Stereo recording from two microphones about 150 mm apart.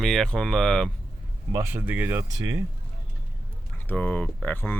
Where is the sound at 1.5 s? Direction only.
15° right (ahead or behind).